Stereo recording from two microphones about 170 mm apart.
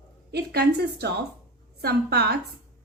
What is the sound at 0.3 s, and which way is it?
A woman's voice, 70° right (ahead or behind).